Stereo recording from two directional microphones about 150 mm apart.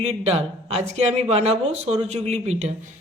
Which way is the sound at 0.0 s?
45° right (ahead or behind).